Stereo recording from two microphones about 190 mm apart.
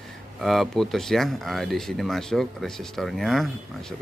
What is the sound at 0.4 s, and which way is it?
Speech, centre (ahead or behind).